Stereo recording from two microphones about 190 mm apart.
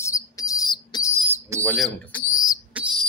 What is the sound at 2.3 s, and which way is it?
Insect, 20° left (ahead or behind).